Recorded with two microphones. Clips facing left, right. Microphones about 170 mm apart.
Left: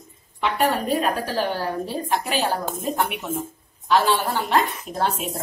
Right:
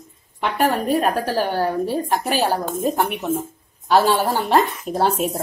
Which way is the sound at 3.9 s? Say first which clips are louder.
Right 3 dB; 45° right (ahead or behind).